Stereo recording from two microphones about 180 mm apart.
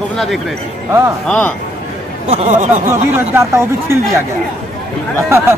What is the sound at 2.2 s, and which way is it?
Speech, 40° right (ahead or behind).